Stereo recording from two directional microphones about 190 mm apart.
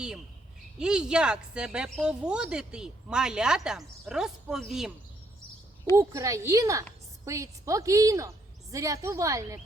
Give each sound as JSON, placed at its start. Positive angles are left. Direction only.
{"t": 0.8, "sound": "speech", "side_deg": -5}
{"t": 6.0, "sound": "a woman's voice", "side_deg": -15}